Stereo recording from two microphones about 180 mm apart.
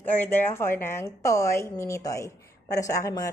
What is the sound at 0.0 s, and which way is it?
Speech, 10° left (ahead or behind).